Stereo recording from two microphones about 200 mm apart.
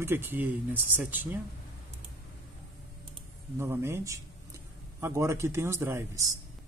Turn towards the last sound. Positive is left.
turn(degrees=-15)  # may be behind; listen again after turning